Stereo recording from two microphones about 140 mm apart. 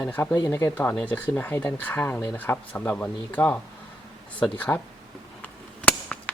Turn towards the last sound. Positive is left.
turn(degrees=10)  # may be behind; listen again after turning